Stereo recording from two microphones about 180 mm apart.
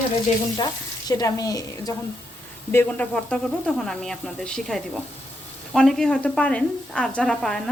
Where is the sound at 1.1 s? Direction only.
20° left (ahead or behind).